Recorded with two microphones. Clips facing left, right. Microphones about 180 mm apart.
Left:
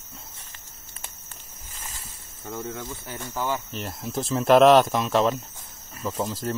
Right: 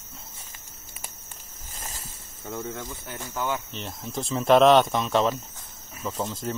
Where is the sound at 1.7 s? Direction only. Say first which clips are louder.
Right 2 dB; 40° right (ahead or behind).